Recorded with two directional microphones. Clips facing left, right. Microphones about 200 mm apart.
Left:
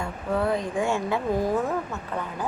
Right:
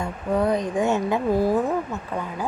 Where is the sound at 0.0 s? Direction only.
20° right (ahead or behind).